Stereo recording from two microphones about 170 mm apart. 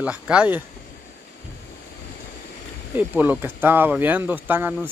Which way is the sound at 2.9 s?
10° right (ahead or behind).